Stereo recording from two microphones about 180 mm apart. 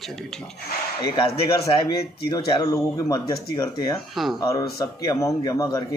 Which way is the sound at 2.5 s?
20° left (ahead or behind).